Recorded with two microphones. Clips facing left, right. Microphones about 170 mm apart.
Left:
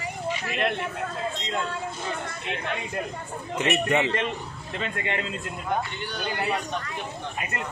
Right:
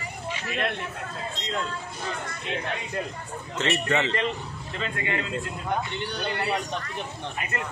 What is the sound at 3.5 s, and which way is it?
Speech, 15° left (ahead or behind).